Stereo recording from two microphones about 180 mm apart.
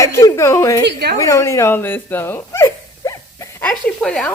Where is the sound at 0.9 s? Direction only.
60° right (ahead or behind).